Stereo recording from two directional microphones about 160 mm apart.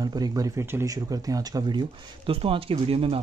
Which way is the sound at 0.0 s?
25° right (ahead or behind).